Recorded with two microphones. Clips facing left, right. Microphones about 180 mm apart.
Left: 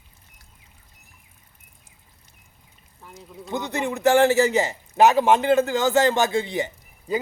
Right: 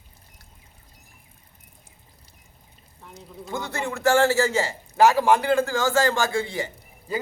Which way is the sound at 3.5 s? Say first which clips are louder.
Left 3 dB; 20° left (ahead or behind).